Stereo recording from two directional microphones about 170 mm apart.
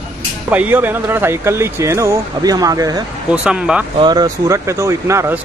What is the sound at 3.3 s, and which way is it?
Speech, 5° right (ahead or behind).